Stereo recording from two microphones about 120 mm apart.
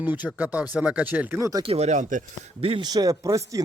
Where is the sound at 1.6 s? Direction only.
60° right (ahead or behind); by 2.2 s 90° right.